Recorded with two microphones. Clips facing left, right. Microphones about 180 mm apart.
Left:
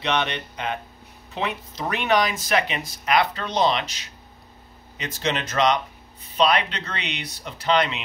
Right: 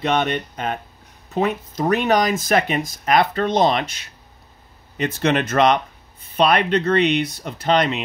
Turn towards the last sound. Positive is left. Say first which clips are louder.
# right 3 dB
turn(degrees=-50)  # may be behind; listen again after turning